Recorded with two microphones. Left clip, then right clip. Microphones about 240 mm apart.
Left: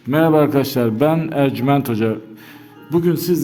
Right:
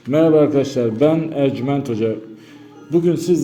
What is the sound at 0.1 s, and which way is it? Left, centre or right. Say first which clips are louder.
A man's voice: right 1 dB; left.